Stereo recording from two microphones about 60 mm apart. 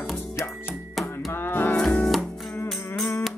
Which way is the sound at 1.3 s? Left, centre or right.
Left.